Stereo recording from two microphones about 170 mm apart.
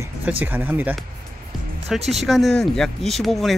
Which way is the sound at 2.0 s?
40° right (ahead or behind).